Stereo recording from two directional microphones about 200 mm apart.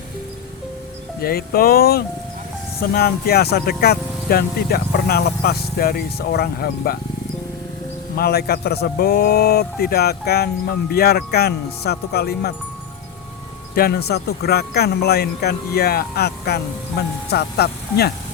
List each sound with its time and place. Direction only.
1.2 s speech: 50° left (ahead or behind)
8.1 s speech: 50° left (ahead or behind)
13.7 s speech: 50° left (ahead or behind)